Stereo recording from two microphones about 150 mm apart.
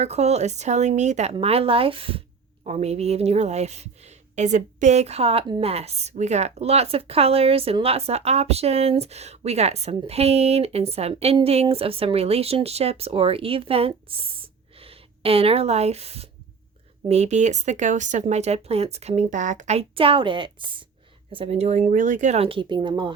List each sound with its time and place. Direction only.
0.0 s a woman's voice: 45° right (ahead or behind)